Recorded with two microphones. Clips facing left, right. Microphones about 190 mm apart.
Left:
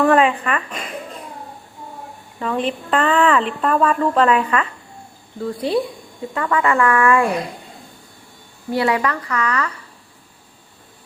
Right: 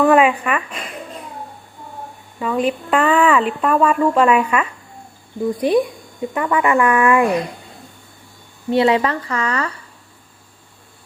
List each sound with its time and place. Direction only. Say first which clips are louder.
0.0 s a sound: right 2 dB; 10° right (ahead or behind)
2.4 s a woman's voice: right 3 dB; 5° right (ahead or behind)
8.7 s speech: right 4 dB; 25° right (ahead or behind)